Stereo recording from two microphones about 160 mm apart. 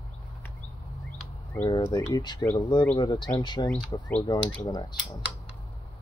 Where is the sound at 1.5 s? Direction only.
20° left (ahead or behind).